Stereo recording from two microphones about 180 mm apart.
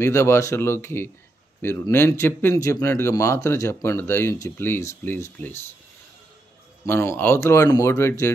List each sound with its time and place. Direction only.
0.0 s speech: 15° left (ahead or behind)
6.9 s speech: 10° left (ahead or behind)